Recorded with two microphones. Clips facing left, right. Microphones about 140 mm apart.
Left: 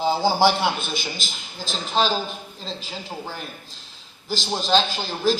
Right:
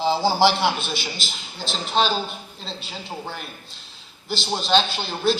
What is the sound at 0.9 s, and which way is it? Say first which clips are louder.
Speech: even; 45° left (ahead or behind).